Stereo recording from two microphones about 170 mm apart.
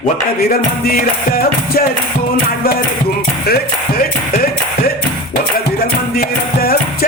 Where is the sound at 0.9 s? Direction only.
60° left (ahead or behind).